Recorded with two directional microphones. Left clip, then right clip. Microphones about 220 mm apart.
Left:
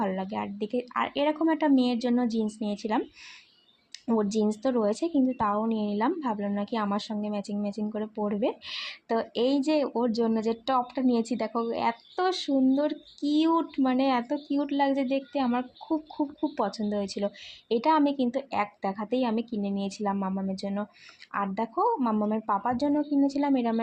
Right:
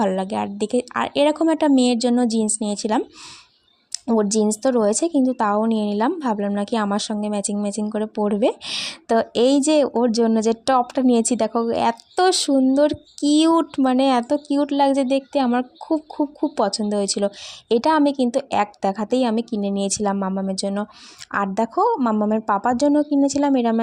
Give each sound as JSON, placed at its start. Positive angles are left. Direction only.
{"t": 0.0, "sound": "speech", "side_deg": -45}